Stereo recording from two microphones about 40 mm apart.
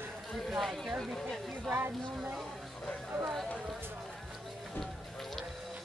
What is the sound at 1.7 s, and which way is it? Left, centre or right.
Speech, right.